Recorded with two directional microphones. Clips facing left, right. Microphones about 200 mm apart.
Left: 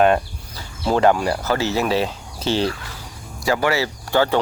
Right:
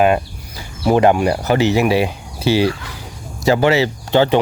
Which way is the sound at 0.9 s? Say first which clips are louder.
Right 4 dB; 15° right (ahead or behind).